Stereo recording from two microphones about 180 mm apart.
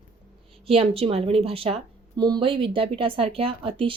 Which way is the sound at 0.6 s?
30° right (ahead or behind).